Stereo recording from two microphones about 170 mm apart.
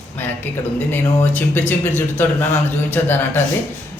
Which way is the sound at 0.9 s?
10° left (ahead or behind).